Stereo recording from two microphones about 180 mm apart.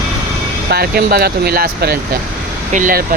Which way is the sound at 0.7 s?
60° right (ahead or behind).